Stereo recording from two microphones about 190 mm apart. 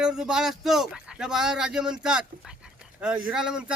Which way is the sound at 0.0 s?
5° right (ahead or behind).